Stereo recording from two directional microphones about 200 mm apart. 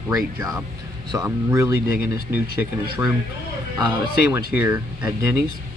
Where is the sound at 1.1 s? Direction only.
15° right (ahead or behind).